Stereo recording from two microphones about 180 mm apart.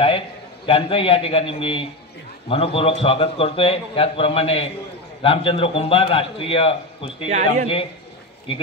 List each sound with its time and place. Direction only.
0.7 s a man's voice: 30° left (ahead or behind)
7.2 s speech: 40° right (ahead or behind)